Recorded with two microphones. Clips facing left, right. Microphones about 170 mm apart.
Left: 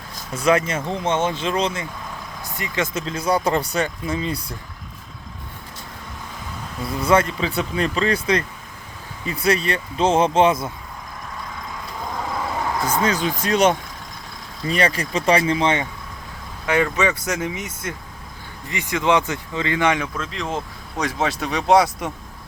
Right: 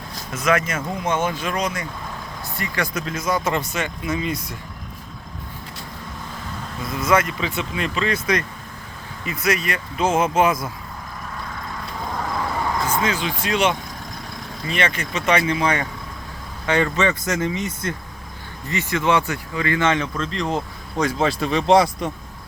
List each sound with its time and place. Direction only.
0.3 s speech: 30° left (ahead or behind)
6.8 s speech: 30° left (ahead or behind)
13.0 s speech: 40° left (ahead or behind); by 15.9 s 25° left (ahead or behind)
16.6 s speech: 10° left (ahead or behind)
21.4 s speech: 10° left (ahead or behind)